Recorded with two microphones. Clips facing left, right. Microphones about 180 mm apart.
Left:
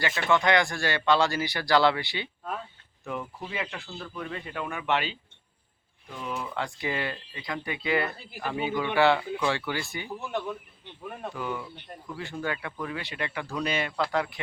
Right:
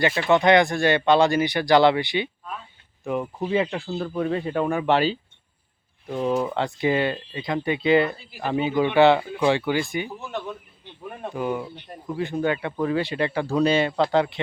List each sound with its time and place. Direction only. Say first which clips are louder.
0.0 s speech: right 6 dB; 20° right (ahead or behind)
11.0 s speech: right 3 dB; 5° right (ahead or behind)
11.5 s speech: right 6 dB; 25° right (ahead or behind)
12.8 s speech: right 13 dB; 30° right (ahead or behind)